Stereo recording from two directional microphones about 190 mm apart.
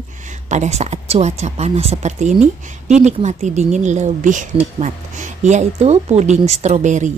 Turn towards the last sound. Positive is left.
turn(degrees=-40)  # may be behind; listen again after turning